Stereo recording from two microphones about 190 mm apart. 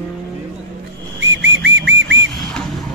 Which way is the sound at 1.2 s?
80° right.